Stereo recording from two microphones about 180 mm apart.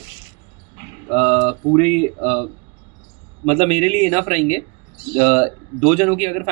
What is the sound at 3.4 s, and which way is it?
Speech, 35° right (ahead or behind).